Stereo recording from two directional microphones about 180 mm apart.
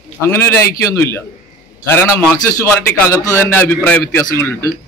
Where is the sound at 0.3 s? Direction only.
10° left (ahead or behind).